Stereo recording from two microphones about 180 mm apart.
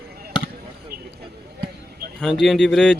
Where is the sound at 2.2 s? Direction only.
Centre (ahead or behind).